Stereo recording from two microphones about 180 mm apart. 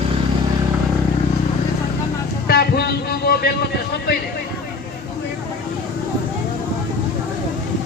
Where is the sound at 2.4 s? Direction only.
65° left (ahead or behind).